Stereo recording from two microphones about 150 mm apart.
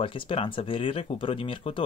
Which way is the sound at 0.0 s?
35° left (ahead or behind).